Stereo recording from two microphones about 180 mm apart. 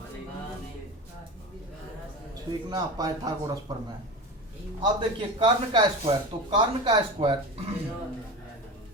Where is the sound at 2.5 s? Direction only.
20° right (ahead or behind).